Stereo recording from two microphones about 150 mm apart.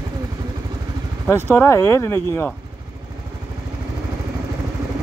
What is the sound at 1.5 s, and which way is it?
Speech, 15° left (ahead or behind).